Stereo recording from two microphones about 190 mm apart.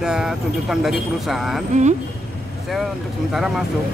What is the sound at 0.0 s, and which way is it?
Speech, 5° right (ahead or behind).